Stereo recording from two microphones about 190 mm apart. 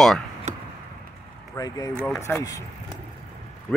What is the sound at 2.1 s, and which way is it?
Speech, 15° left (ahead or behind).